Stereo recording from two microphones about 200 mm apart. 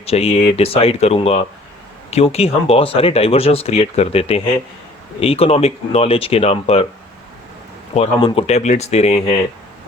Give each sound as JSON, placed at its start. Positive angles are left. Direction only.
{"t": 0.0, "sound": "speech", "side_deg": 30}
{"t": 7.9, "sound": "speech", "side_deg": 30}